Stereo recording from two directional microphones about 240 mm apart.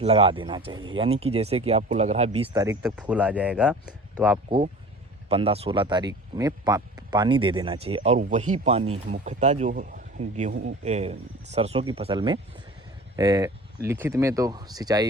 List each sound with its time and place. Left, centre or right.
0.0 s speech: right; by 3.9 s centre
4.4 s speech: right